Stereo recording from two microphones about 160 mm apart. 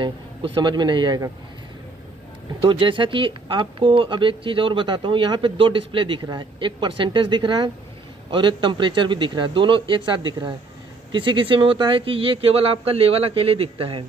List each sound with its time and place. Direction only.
0.0 s a man's voice: 30° right (ahead or behind)
2.6 s speech: 30° right (ahead or behind)